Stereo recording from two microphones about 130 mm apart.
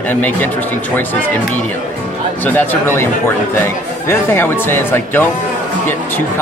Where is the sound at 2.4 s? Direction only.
15° left (ahead or behind).